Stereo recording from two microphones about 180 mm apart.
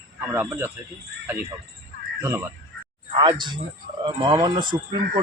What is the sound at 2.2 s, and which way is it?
Speech, 15° right (ahead or behind).